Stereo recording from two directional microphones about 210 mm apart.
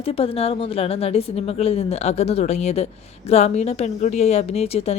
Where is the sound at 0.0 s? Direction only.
25° left (ahead or behind).